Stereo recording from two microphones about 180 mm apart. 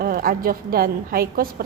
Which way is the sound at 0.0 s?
55° right (ahead or behind).